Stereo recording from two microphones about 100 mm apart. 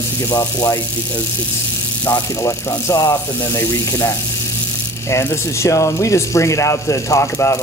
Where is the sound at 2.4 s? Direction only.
35° left (ahead or behind).